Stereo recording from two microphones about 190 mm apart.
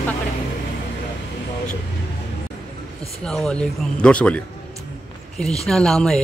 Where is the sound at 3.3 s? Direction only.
5° left (ahead or behind).